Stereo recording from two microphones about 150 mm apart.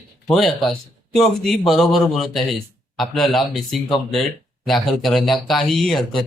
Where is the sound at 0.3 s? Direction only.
Centre (ahead or behind).